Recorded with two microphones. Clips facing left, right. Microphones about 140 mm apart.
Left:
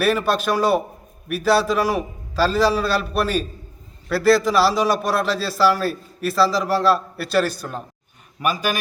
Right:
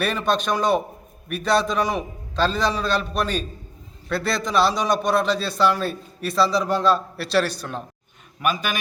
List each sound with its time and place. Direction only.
0.0 s a man's voice: 5° left (ahead or behind)